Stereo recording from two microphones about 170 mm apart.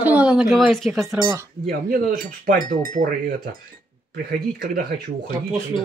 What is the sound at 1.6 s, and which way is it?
Speech, 60° right (ahead or behind).